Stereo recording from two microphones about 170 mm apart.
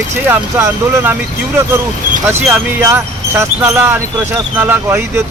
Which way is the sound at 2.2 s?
10° right (ahead or behind).